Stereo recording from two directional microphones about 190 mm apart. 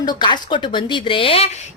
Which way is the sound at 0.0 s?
20° left (ahead or behind).